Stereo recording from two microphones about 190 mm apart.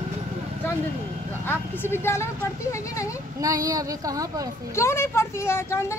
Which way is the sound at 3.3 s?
20° right (ahead or behind).